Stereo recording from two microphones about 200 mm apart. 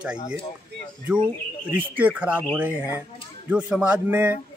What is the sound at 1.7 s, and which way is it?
Speech, 10° right (ahead or behind).